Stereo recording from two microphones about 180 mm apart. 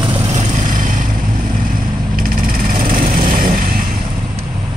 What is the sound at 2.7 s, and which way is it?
Vehicle, 50° right (ahead or behind).